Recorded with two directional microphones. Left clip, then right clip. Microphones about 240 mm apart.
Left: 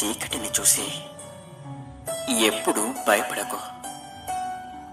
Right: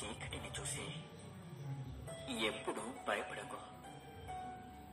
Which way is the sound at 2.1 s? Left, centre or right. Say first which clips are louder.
Left 17 dB; left.